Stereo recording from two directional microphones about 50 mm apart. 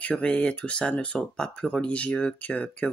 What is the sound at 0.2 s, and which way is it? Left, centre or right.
Speech, centre.